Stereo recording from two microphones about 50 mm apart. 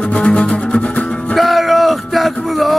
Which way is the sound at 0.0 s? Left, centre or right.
Left.